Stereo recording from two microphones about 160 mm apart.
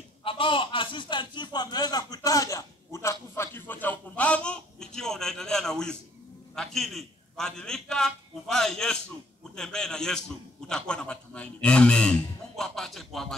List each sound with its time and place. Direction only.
0.2 s a man's voice: 35° left (ahead or behind); by 13.4 s centre (ahead or behind)